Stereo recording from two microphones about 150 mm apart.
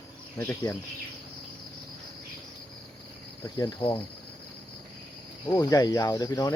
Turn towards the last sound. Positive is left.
turn(degrees=20)  # may be behind; listen again after turning